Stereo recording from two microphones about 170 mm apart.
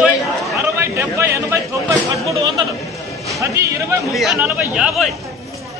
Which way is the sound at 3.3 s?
20° right (ahead or behind).